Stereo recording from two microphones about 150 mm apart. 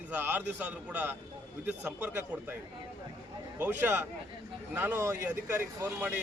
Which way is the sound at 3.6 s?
10° right (ahead or behind).